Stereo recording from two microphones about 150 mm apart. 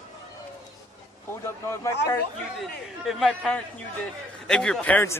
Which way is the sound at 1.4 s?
20° left (ahead or behind).